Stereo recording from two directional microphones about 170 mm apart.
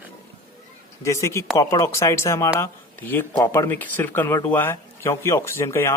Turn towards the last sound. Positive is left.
turn(degrees=15)  # may be behind; listen again after turning